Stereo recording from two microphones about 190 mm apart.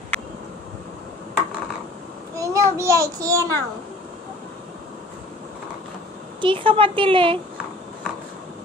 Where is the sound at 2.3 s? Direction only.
15° right (ahead or behind).